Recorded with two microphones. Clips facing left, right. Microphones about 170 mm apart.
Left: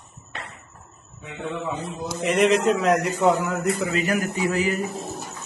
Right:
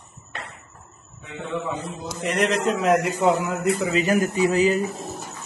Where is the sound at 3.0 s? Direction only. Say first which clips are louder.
Even; 15° right (ahead or behind).